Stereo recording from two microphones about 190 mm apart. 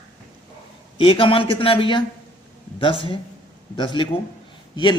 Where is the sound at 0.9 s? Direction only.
25° left (ahead or behind).